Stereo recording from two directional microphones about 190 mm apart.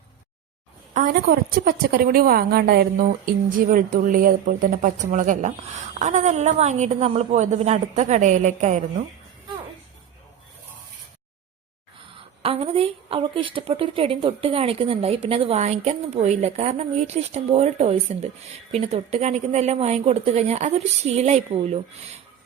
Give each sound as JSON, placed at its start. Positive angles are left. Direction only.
{"t": 0.9, "sound": "a woman's voice", "side_deg": -50}
{"t": 12.4, "sound": "a woman's voice", "side_deg": -30}